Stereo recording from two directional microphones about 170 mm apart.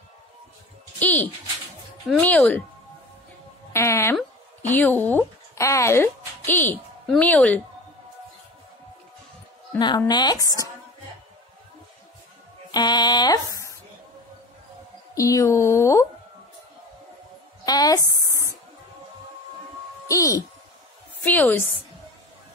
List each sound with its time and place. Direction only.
0.9 s music: 10° left (ahead or behind)
2.0 s speech: 5° left (ahead or behind)
3.7 s speech: 15° left (ahead or behind)
9.8 s speech: 25° left (ahead or behind)
12.7 s a sound: 25° left (ahead or behind)
15.1 s speech: 20° left (ahead or behind)
17.6 s speech: 20° left (ahead or behind)
20.1 s speech: 20° left (ahead or behind)